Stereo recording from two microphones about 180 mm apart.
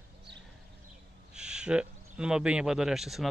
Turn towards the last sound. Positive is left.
turn(degrees=0)  # may be behind; listen again after turning